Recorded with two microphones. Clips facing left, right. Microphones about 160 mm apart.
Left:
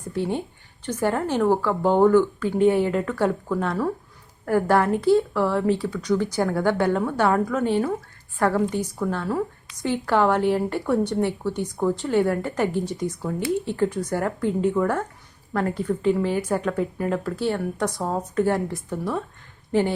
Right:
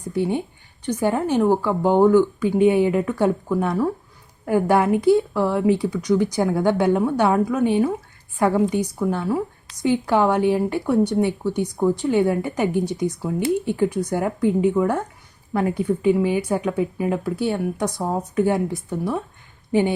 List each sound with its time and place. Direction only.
0.1 s speech: 10° right (ahead or behind)